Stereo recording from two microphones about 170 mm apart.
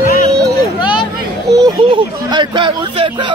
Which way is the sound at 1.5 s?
25° right (ahead or behind).